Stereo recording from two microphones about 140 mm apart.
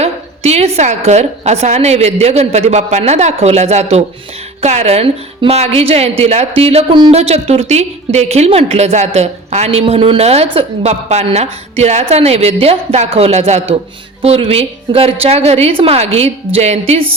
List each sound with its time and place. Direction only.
0.0 s a woman's voice: 50° right (ahead or behind)